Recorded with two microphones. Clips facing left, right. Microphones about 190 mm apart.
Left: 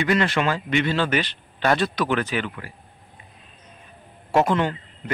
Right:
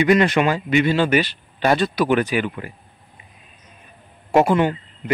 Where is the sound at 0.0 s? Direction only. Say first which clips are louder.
Right 5 dB; 15° right (ahead or behind).